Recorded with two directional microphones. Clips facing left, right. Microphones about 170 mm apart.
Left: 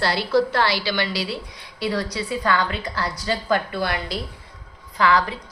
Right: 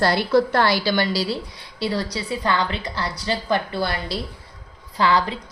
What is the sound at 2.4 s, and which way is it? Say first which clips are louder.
A woman's voice: even; 25° right (ahead or behind).